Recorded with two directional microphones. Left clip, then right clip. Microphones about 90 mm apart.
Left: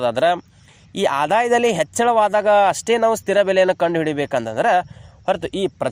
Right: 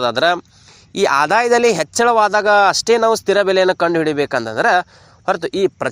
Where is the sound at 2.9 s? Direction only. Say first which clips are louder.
Right 3 dB; 15° right (ahead or behind).